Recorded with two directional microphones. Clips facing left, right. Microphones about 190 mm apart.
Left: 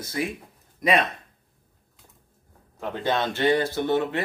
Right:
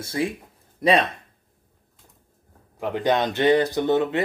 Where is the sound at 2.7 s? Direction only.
15° right (ahead or behind).